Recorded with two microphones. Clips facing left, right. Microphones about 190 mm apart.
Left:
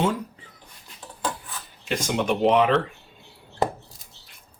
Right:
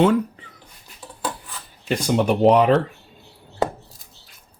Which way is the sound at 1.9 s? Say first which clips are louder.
Right 5 dB; 35° right (ahead or behind).